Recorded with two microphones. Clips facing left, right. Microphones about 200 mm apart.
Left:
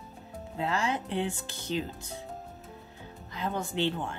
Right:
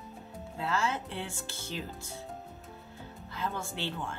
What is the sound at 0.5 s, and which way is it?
A woman's voice, 15° left (ahead or behind).